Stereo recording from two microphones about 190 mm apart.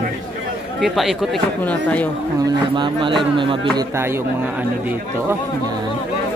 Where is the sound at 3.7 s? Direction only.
15° right (ahead or behind).